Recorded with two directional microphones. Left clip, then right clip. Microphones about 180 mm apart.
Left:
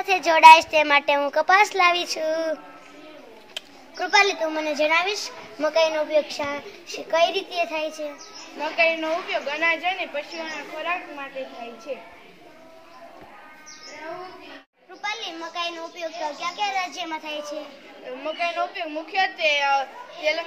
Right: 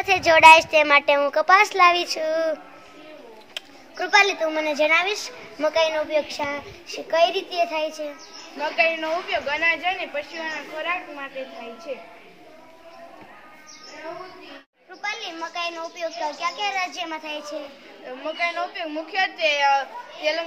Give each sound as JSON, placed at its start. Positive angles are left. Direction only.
{"t": 0.0, "sound": "a woman's voice", "side_deg": -30}
{"t": 3.5, "sound": "a woman's voice", "side_deg": -10}
{"t": 8.5, "sound": "a woman's voice", "side_deg": 10}
{"t": 15.0, "sound": "a woman's voice", "side_deg": -5}
{"t": 18.2, "sound": "a woman's voice", "side_deg": 10}